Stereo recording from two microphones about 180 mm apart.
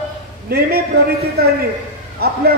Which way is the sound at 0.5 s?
60° right (ahead or behind).